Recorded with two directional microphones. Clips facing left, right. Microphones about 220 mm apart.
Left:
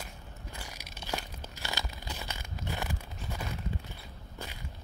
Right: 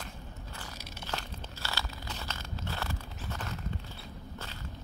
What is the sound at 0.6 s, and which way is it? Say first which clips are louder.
Tearing: right 1 dB; 15° left (ahead or behind).